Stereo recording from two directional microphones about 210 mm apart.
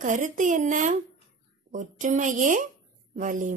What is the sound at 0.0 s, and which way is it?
A woman's voice, 35° right (ahead or behind).